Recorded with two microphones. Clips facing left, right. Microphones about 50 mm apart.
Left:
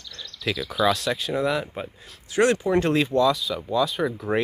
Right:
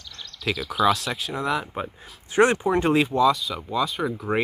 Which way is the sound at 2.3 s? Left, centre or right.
Right.